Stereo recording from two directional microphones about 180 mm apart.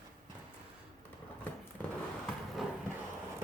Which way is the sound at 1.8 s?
10° left (ahead or behind).